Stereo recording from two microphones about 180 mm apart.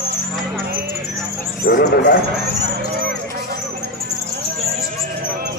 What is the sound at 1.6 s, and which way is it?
Speech, 65° left (ahead or behind).